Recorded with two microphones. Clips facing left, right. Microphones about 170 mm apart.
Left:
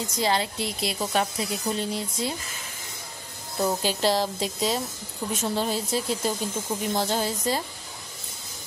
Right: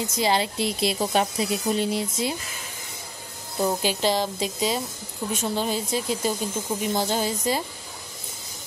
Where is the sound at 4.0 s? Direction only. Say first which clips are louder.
Left 2 dB; centre (ahead or behind).